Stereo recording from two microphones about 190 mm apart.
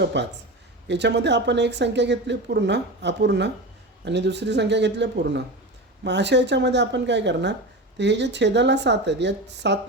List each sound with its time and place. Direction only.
0.0 s speech: 65° right (ahead or behind)